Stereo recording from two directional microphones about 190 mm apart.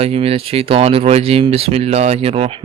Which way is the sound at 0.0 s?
30° right (ahead or behind).